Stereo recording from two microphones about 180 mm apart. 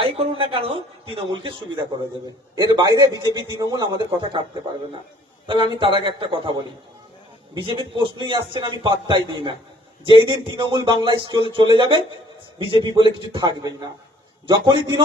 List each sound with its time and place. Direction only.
0.0 s a man's voice: 30° right (ahead or behind)
5.5 s a man's voice: 25° right (ahead or behind)